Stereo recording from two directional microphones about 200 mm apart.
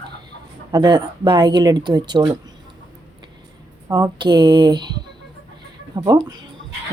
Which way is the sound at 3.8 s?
20° right (ahead or behind).